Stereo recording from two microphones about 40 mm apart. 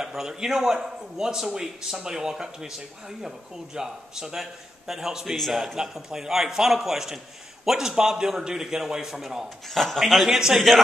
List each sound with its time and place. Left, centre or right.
0.0 s a man's voice: centre
10.3 s a man's voice: centre